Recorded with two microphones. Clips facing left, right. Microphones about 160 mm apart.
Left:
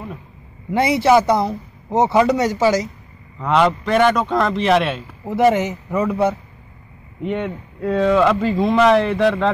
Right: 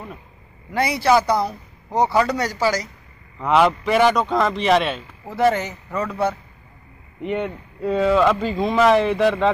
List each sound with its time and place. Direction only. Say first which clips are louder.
0.7 s a man's voice: left 3 dB; 25° left (ahead or behind)
3.3 s speech: even; 5° right (ahead or behind)
5.2 s a man's voice: left 4 dB; 20° left (ahead or behind)
7.2 s speech: left 1 dB; centre (ahead or behind)